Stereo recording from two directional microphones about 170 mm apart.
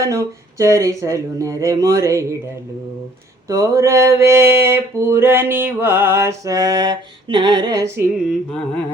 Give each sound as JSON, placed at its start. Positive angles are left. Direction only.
{"t": 0.0, "sound": "speech", "side_deg": -20}
{"t": 3.5, "sound": "mantra", "side_deg": -20}